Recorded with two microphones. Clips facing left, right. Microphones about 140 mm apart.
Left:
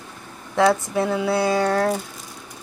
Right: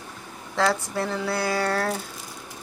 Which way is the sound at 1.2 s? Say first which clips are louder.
Left 4 dB; 20° left (ahead or behind).